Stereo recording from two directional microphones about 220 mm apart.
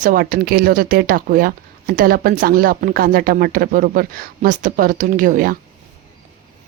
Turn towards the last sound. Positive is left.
turn(degrees=-40)  # may be behind; listen again after turning